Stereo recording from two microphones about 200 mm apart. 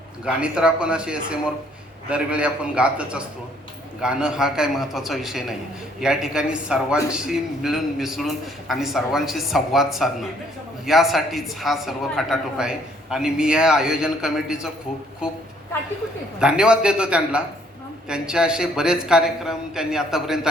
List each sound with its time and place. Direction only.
0.3 s a man's voice: 5° right (ahead or behind)
16.4 s a man's voice: 5° right (ahead or behind)